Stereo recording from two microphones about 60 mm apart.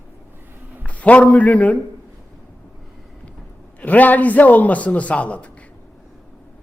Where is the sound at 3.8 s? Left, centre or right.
Left.